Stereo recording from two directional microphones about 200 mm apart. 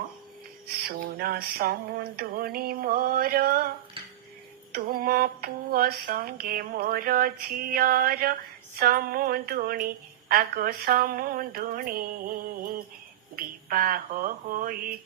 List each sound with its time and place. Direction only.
0.9 s speech: 50° right (ahead or behind)
4.7 s speech: 45° right (ahead or behind)